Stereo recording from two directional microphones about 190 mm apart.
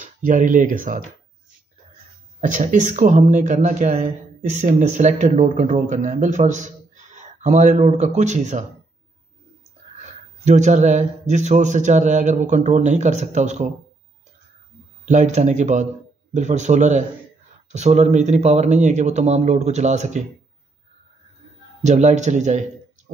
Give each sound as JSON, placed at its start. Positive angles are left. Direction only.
{"t": 0.0, "sound": "speech", "side_deg": -45}
{"t": 2.4, "sound": "speech", "side_deg": -40}
{"t": 10.4, "sound": "speech", "side_deg": -40}
{"t": 15.0, "sound": "speech", "side_deg": -40}
{"t": 21.8, "sound": "speech", "side_deg": -35}